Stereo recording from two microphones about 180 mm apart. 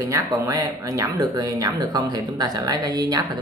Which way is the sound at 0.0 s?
15° right (ahead or behind).